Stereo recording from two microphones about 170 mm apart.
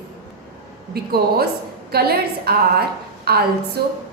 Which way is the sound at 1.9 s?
65° right (ahead or behind).